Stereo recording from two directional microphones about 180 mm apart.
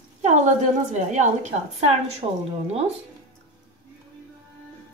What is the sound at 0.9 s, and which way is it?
A woman's voice, 40° right (ahead or behind).